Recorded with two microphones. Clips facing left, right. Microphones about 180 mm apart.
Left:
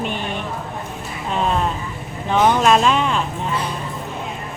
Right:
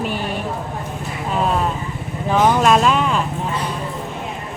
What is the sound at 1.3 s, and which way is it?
Speech, 5° right (ahead or behind).